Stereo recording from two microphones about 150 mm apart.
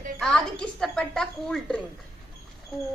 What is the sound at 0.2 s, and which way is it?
A woman's voice, 5° left (ahead or behind).